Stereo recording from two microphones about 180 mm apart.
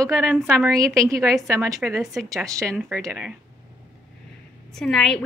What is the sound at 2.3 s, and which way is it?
Speech, 15° right (ahead or behind).